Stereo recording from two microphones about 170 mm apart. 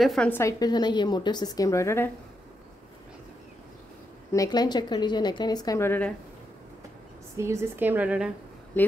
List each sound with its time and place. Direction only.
0.0 s a woman's voice: centre (ahead or behind)
0.3 s speech: 15° left (ahead or behind)
4.3 s speech: 20° left (ahead or behind)
7.3 s a woman's voice: 15° right (ahead or behind)
8.8 s speech: 10° left (ahead or behind)